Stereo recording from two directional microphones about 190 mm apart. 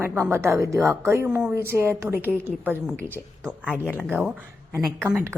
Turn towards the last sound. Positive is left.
turn(degrees=-10)  # may be behind; listen again after turning